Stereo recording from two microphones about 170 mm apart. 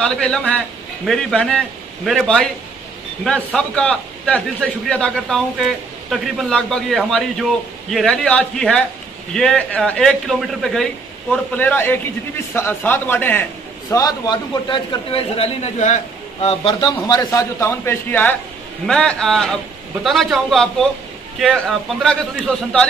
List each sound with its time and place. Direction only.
0.0 s a man's voice: 5° left (ahead or behind)
3.5 s a man's voice: 5° left (ahead or behind); by 16.7 s 35° left (ahead or behind)
16.8 s a man's voice: 20° left (ahead or behind); by 22.8 s 5° left (ahead or behind)